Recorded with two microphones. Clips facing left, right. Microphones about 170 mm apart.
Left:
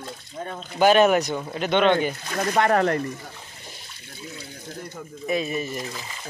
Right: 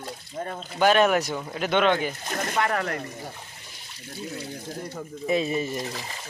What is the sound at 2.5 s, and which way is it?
Speech, 40° left (ahead or behind).